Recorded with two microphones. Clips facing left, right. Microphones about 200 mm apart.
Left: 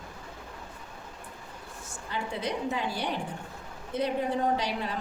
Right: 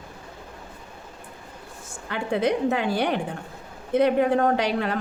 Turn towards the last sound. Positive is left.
turn(degrees=-65)  # may be behind; listen again after turning